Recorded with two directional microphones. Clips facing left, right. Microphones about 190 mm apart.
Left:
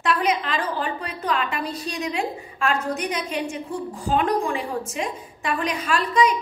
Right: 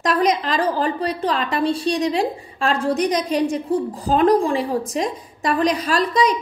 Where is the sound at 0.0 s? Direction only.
40° right (ahead or behind).